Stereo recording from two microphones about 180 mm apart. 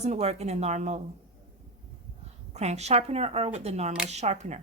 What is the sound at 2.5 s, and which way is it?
A woman's voice, 40° right (ahead or behind).